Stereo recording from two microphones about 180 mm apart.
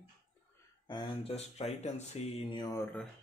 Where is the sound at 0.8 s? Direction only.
25° left (ahead or behind).